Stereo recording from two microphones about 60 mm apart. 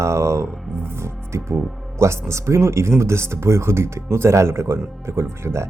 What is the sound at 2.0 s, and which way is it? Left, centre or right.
Speech, right.